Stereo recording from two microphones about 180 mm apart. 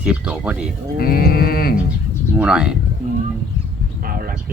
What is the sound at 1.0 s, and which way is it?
Livestock, 55° left (ahead or behind).